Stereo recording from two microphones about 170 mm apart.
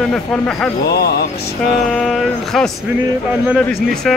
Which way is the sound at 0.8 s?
70° left (ahead or behind).